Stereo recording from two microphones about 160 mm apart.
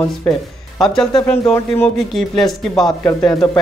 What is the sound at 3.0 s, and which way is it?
Speech, 25° left (ahead or behind).